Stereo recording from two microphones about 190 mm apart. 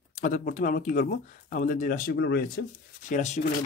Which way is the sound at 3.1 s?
40° left (ahead or behind).